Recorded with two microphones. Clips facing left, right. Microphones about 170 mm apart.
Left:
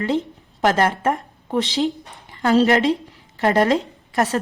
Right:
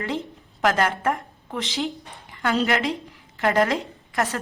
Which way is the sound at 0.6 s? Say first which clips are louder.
Left 3 dB; 30° left (ahead or behind).